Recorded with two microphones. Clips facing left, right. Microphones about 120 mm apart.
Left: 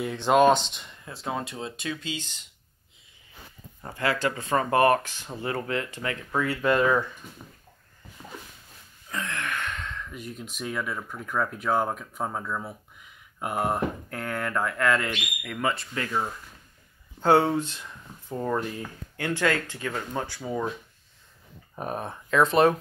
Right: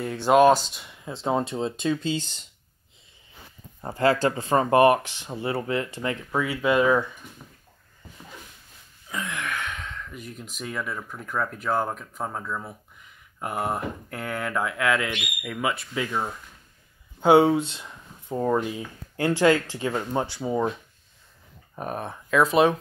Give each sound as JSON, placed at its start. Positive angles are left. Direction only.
{"t": 0.0, "sound": "speech", "side_deg": -5}
{"t": 1.0, "sound": "speech", "side_deg": -25}
{"t": 3.8, "sound": "speech", "side_deg": -30}
{"t": 9.1, "sound": "a sound", "side_deg": -5}
{"t": 10.0, "sound": "speech", "side_deg": 0}
{"t": 19.1, "sound": "speech", "side_deg": -30}
{"t": 21.7, "sound": "speech", "side_deg": 0}